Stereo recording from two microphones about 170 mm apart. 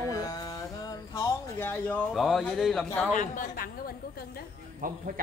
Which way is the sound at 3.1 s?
50° left (ahead or behind).